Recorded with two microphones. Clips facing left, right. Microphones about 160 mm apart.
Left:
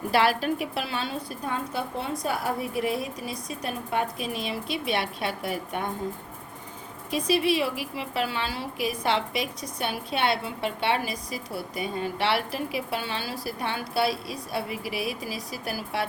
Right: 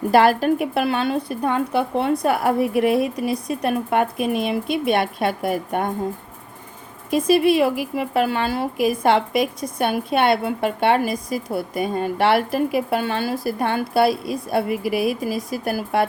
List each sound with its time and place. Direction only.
0.1 s a woman's voice: 50° right (ahead or behind)
7.1 s a woman's voice: 50° right (ahead or behind)